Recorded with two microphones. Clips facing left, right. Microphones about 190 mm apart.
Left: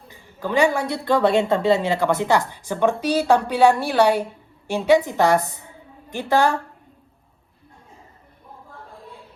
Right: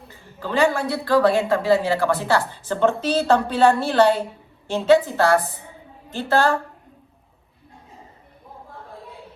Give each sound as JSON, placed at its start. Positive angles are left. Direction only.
{"t": 0.1, "sound": "a woman's voice", "side_deg": 15}